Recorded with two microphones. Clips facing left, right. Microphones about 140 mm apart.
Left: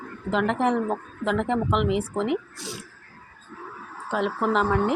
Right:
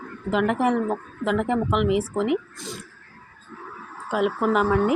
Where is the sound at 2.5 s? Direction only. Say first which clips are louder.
Right 1 dB; 75° left (ahead or behind).